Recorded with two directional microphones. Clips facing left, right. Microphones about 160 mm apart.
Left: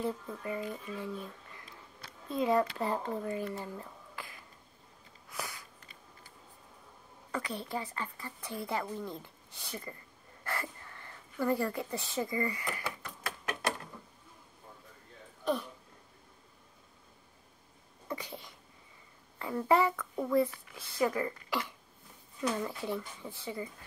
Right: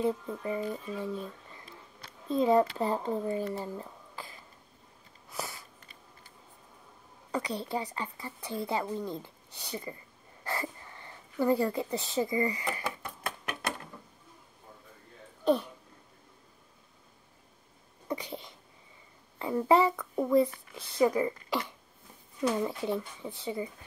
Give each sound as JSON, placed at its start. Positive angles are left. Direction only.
{"t": 0.0, "sound": "speech", "side_deg": -20}
{"t": 5.3, "sound": "sniff", "side_deg": -25}
{"t": 7.2, "sound": "a sound", "side_deg": -20}
{"t": 7.5, "sound": "a woman's voice", "side_deg": -30}
{"t": 18.0, "sound": "sneeze", "side_deg": -20}
{"t": 19.3, "sound": "speech", "side_deg": -20}